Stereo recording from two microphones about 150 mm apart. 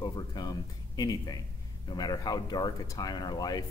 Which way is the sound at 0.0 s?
30° left (ahead or behind).